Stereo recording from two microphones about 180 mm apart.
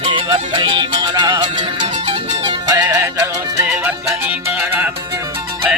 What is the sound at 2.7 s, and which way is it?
Music, 20° right (ahead or behind).